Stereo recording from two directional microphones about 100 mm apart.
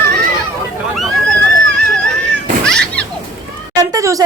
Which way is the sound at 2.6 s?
10° left (ahead or behind).